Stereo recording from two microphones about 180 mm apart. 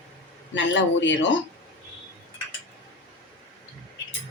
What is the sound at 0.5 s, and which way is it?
Speech, 90° left.